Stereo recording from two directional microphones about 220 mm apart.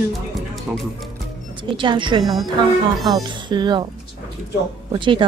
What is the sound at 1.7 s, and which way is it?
Speech, 20° right (ahead or behind).